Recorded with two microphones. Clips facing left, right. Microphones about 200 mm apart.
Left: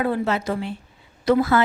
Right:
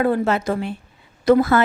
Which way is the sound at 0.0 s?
50° right (ahead or behind).